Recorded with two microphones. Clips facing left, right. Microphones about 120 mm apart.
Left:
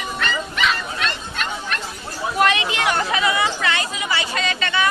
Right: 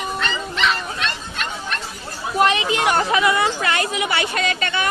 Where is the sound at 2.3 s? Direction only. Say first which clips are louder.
Right 2 dB; 30° right (ahead or behind).